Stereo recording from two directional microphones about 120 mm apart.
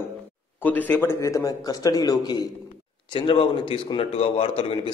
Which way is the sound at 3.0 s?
45° left (ahead or behind).